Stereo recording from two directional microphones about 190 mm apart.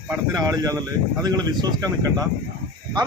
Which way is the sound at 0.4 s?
20° right (ahead or behind).